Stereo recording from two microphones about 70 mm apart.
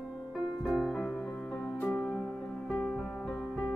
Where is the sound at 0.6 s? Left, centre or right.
Centre.